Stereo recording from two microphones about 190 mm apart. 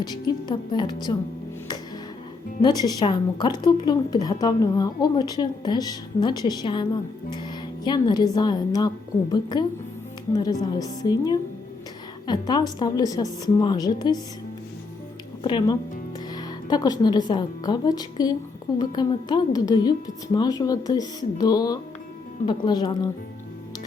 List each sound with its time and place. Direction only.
0.0 s speech: 20° left (ahead or behind)
2.6 s speech: 20° left (ahead or behind)
15.4 s a woman's voice: 25° left (ahead or behind)